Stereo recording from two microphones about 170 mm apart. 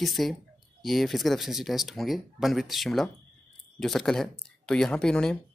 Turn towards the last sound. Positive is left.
turn(degrees=5)  # may be behind; listen again after turning